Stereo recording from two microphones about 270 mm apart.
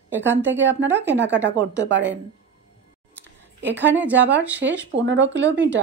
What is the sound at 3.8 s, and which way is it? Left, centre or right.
Speech, centre.